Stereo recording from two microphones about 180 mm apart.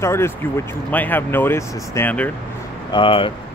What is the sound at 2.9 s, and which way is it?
Speech, 30° left (ahead or behind).